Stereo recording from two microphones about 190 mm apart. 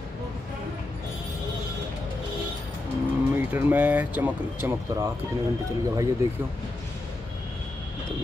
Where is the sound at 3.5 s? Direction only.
10° right (ahead or behind).